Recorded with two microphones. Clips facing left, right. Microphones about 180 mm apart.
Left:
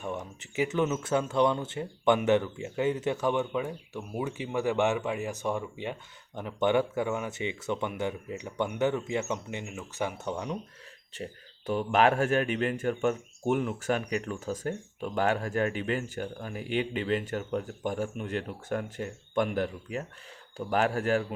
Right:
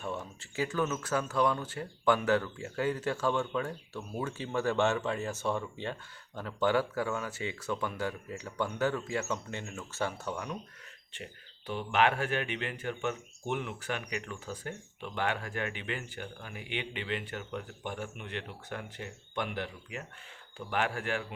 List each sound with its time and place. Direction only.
0.0 s speech: 15° left (ahead or behind)
11.1 s speech: 40° left (ahead or behind)